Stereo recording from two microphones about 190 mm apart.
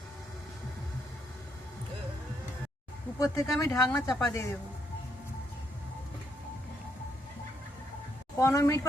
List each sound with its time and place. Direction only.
3.2 s a woman's voice: 15° left (ahead or behind)
8.4 s a woman's voice: 15° left (ahead or behind)